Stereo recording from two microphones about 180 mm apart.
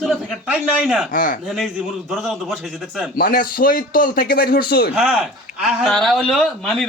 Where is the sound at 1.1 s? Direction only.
50° left (ahead or behind).